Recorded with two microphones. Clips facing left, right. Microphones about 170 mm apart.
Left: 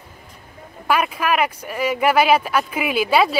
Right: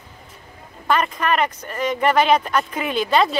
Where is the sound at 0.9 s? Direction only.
10° left (ahead or behind).